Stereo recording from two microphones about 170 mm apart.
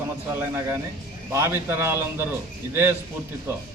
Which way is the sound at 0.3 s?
15° right (ahead or behind).